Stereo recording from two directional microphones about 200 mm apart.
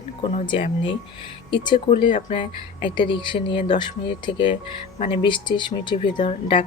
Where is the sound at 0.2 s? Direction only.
25° left (ahead or behind).